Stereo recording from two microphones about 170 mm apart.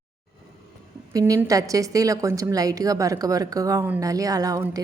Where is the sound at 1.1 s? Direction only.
20° right (ahead or behind).